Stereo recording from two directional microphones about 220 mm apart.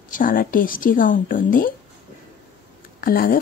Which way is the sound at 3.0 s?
40° left (ahead or behind).